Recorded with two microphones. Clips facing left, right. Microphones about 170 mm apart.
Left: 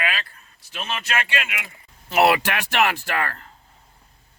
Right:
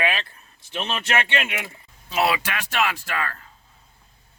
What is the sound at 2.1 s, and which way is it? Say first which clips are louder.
A man's voice: left 5 dB; 65° left (ahead or behind).